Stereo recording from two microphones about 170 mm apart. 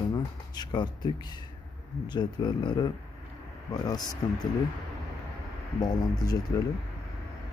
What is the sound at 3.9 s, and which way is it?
Speech, 25° left (ahead or behind).